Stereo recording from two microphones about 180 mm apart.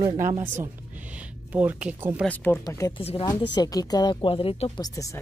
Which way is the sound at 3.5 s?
20° left (ahead or behind).